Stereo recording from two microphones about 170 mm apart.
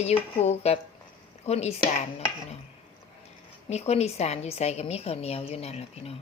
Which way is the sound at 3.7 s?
40° left (ahead or behind).